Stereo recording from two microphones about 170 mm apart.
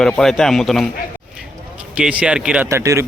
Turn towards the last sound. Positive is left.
turn(degrees=-15)  # may be behind; listen again after turning